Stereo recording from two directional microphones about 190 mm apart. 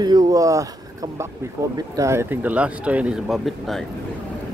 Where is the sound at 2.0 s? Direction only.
15° right (ahead or behind).